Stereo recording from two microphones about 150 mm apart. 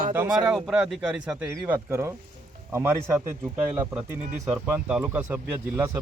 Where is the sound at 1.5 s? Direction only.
20° right (ahead or behind).